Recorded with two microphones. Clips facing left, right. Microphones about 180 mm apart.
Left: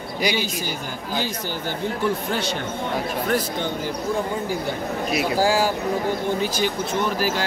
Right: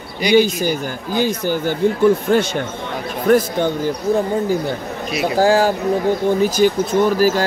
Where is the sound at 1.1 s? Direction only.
50° right (ahead or behind).